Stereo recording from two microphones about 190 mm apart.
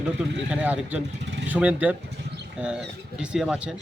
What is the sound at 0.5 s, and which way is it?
Speech, 10° right (ahead or behind).